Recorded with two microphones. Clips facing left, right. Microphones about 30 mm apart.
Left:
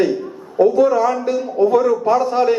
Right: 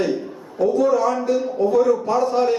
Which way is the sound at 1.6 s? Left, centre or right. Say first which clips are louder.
Left 4 dB; left.